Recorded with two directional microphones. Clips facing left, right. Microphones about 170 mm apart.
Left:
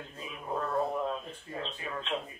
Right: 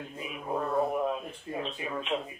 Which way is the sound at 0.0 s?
15° right (ahead or behind).